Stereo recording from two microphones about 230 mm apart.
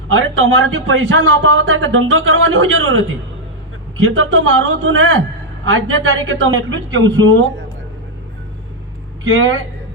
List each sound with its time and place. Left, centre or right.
0.1 s speech: right
9.2 s speech: right